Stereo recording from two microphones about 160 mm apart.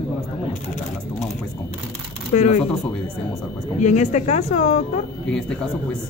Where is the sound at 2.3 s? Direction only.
45° left (ahead or behind).